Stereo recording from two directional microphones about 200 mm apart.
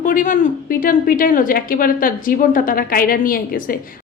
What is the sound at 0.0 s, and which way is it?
A woman's voice, 40° left (ahead or behind).